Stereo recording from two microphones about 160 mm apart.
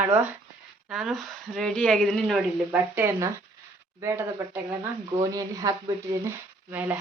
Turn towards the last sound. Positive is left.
turn(degrees=-10)  # may be behind; listen again after turning